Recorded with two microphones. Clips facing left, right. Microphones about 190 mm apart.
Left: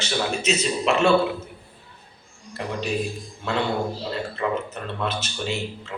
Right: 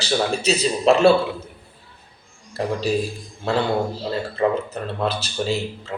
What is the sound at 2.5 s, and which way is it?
Speech, 35° right (ahead or behind).